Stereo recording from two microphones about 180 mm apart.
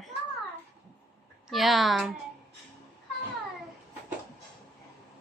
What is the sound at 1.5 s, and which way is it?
Speech, centre (ahead or behind).